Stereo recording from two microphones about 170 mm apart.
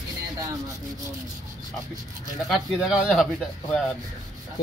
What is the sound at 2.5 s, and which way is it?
Speech, centre (ahead or behind).